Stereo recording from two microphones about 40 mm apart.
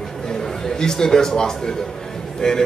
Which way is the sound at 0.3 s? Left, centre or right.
Centre.